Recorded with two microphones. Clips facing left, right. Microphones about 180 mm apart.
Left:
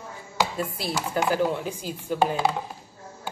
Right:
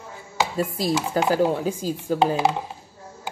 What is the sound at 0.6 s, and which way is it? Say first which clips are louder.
Speech: right 6 dB; 40° right (ahead or behind).